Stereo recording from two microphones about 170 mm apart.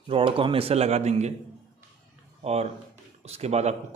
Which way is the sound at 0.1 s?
30° right (ahead or behind).